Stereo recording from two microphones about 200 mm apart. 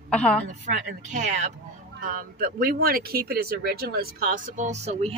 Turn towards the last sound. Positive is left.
turn(degrees=-30)  # may be behind; listen again after turning